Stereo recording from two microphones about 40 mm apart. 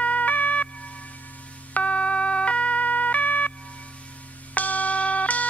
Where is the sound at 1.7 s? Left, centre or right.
Left.